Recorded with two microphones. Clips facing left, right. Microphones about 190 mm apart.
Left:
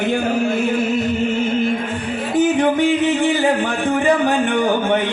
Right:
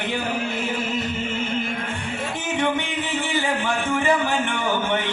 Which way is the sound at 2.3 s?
35° left (ahead or behind).